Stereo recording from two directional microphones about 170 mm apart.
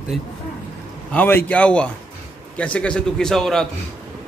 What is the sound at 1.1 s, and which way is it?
A man's voice, 10° left (ahead or behind).